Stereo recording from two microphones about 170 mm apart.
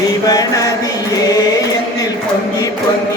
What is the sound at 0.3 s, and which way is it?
Mantra, 20° left (ahead or behind).